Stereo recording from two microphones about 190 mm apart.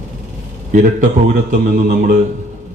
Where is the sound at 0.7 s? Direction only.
40° right (ahead or behind).